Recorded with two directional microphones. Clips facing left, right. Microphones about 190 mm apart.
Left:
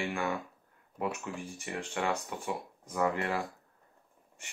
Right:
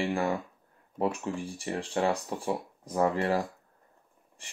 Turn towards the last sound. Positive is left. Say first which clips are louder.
# right 4 dB
turn(degrees=-35)  # may be behind; listen again after turning